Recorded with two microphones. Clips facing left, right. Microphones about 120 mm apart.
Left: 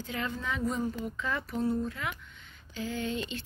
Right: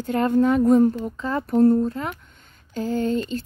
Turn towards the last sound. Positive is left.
turn(degrees=-40)  # may be behind; listen again after turning